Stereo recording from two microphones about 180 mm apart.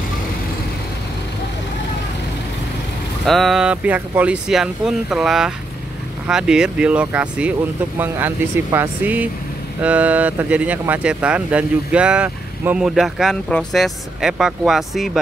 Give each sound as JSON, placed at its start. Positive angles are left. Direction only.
{"t": 3.3, "sound": "speech", "side_deg": 0}